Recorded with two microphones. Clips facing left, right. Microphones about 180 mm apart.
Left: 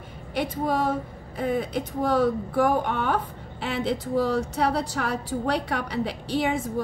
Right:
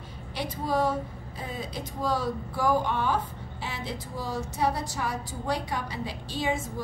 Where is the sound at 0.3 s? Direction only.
55° left (ahead or behind).